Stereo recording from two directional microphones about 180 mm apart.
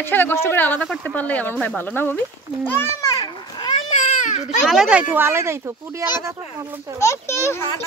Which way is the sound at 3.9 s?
40° left (ahead or behind).